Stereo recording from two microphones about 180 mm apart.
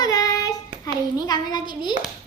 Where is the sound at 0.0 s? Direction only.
20° left (ahead or behind).